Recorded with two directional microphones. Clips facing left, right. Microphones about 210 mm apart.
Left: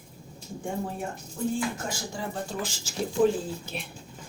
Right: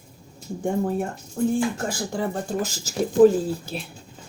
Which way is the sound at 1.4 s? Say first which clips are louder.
Right 7 dB; 55° right (ahead or behind).